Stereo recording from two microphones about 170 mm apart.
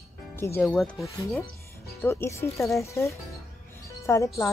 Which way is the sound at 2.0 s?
15° left (ahead or behind).